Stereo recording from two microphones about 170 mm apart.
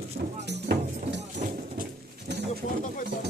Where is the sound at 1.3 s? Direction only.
55° right (ahead or behind).